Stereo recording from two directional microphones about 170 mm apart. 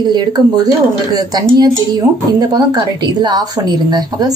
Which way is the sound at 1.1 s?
20° right (ahead or behind).